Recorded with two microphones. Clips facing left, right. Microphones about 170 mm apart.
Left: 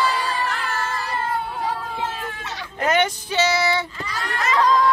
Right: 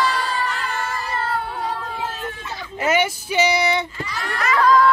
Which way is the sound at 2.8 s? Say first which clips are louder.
Even; 10° right (ahead or behind).